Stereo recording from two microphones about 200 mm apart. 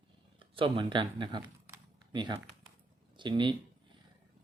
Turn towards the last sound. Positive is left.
turn(degrees=-25)  # may be behind; listen again after turning